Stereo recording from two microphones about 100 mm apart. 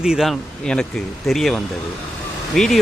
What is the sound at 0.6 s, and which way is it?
Speech, 10° left (ahead or behind).